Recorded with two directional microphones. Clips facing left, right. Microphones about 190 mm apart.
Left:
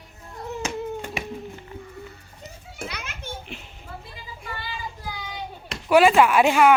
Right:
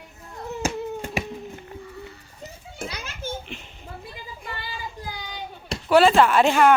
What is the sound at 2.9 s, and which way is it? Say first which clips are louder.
Children playing: even; 30° right (ahead or behind).